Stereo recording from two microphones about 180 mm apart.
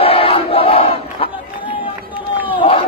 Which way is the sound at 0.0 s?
30° left (ahead or behind).